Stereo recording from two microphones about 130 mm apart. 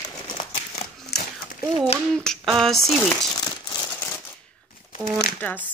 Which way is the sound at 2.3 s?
Centre (ahead or behind).